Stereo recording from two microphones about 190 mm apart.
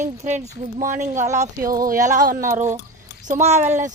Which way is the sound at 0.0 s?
40° right (ahead or behind).